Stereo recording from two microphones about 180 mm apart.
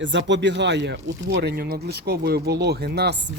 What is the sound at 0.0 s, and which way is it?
Speech, 90° right.